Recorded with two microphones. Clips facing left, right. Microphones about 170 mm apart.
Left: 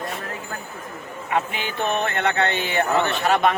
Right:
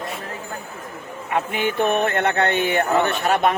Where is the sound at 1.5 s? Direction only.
50° right (ahead or behind).